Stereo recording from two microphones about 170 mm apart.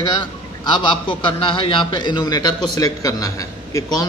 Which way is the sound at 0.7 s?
30° left (ahead or behind).